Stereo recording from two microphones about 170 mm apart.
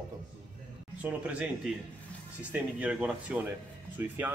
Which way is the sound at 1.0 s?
5° right (ahead or behind).